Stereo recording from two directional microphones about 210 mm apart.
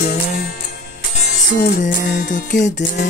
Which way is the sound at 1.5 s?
55° left (ahead or behind).